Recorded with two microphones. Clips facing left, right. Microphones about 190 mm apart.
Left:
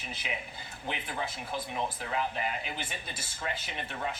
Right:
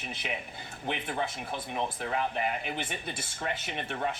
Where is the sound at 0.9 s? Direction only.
60° right (ahead or behind).